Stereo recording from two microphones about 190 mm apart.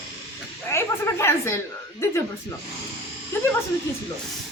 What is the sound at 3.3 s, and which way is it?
Speech, 15° left (ahead or behind).